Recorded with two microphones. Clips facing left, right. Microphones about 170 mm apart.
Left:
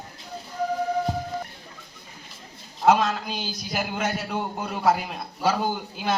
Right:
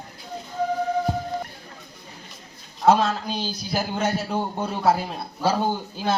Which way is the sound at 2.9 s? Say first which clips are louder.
Right 1 dB; 30° right (ahead or behind).